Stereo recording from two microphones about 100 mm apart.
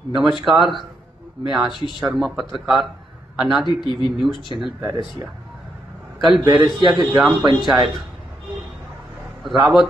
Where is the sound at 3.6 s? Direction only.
50° left (ahead or behind).